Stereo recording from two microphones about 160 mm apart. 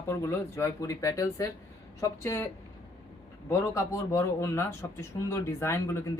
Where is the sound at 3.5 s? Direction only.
20° left (ahead or behind).